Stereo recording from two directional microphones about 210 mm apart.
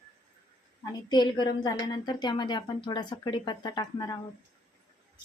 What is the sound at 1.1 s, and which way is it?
A woman's voice, 20° left (ahead or behind).